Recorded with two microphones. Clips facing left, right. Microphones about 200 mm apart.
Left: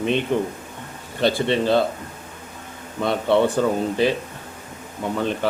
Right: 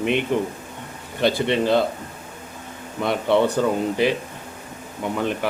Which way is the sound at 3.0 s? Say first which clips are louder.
Left 1 dB; 15° right (ahead or behind).